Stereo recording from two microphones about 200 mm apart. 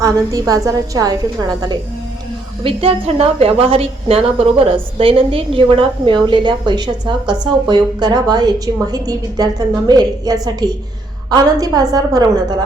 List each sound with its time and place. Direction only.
0.0 s a woman's voice: 15° right (ahead or behind)